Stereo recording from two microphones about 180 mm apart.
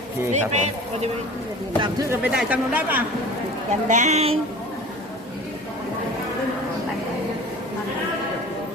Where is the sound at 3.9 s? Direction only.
40° right (ahead or behind).